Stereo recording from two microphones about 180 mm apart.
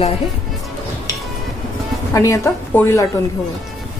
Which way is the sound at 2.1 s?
15° left (ahead or behind).